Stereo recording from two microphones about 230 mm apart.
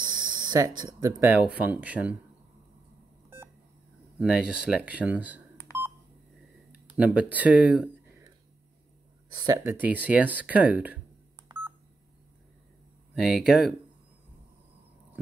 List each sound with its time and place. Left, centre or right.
0.0 s a sound: centre
1.3 s speech: centre
4.2 s speech: centre
7.0 s speech: centre
9.3 s speech: centre
13.1 s speech: centre